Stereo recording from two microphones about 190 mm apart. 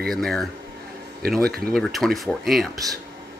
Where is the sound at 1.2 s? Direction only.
55° right (ahead or behind).